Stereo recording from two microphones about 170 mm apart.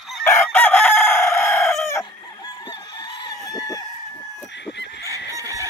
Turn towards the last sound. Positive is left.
turn(degrees=-20)  # may be behind; listen again after turning